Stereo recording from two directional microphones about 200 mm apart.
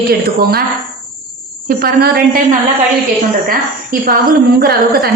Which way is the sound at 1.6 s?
45° right (ahead or behind).